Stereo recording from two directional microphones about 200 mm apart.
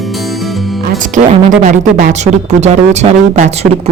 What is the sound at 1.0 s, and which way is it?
Speech, 40° right (ahead or behind).